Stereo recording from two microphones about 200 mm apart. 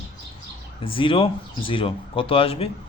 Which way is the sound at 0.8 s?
25° left (ahead or behind).